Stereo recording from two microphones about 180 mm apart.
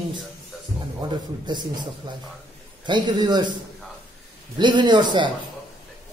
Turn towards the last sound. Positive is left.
turn(degrees=-25)  # may be behind; listen again after turning